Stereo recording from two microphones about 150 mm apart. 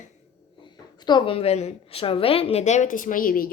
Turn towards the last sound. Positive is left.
turn(degrees=70)  # may be behind; listen again after turning